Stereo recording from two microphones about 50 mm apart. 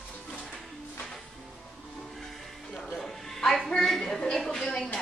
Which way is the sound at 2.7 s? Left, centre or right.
Centre.